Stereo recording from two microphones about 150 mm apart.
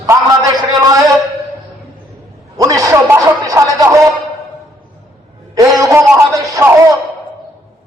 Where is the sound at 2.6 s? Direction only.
25° right (ahead or behind).